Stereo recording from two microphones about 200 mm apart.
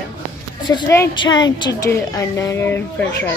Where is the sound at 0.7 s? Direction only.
20° left (ahead or behind).